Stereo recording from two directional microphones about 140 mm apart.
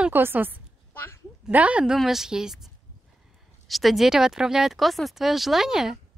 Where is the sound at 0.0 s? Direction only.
15° right (ahead or behind).